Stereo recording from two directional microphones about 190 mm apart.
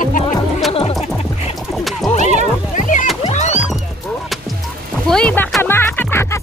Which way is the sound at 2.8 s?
40° left (ahead or behind).